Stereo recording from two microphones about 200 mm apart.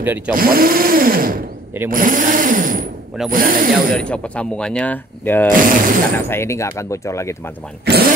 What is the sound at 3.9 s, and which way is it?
Speech, 5° left (ahead or behind).